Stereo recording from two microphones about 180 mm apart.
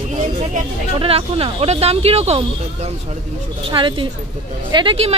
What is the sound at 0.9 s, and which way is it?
Speech, 30° right (ahead or behind).